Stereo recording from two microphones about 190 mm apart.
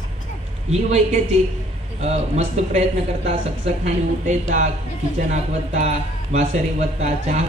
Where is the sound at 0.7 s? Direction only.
35° right (ahead or behind).